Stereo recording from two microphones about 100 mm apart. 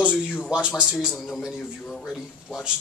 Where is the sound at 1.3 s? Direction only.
Centre (ahead or behind).